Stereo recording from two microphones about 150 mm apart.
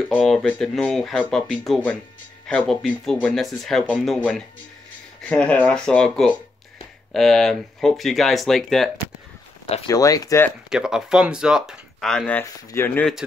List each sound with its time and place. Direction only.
0.1 s speech: 5° left (ahead or behind)
9.8 s speech: 25° left (ahead or behind)
10.7 s speech: 5° right (ahead or behind); by 13.1 s 15° left (ahead or behind)